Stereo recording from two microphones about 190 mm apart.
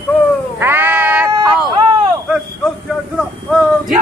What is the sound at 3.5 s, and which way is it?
Speech, centre (ahead or behind).